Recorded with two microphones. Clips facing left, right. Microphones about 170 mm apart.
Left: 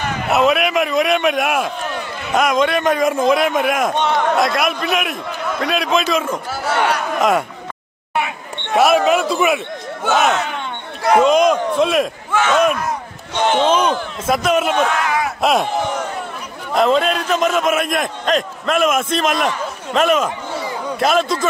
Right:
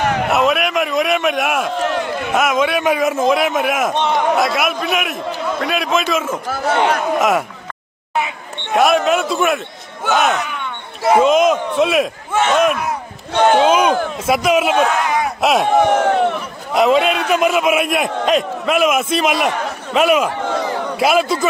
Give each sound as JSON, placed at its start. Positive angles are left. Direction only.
{"t": 0.0, "sound": "a sound", "side_deg": -65}
{"t": 0.3, "sound": "a man's voice", "side_deg": 0}
{"t": 1.8, "sound": "a sound", "side_deg": -90}
{"t": 2.3, "sound": "a man's voice", "side_deg": -5}
{"t": 8.7, "sound": "a man's voice", "side_deg": 0}
{"t": 13.3, "sound": "speech", "side_deg": -55}
{"t": 13.6, "sound": "a man's voice", "side_deg": -10}
{"t": 15.6, "sound": "speech", "side_deg": -65}
{"t": 16.7, "sound": "a man's voice", "side_deg": -5}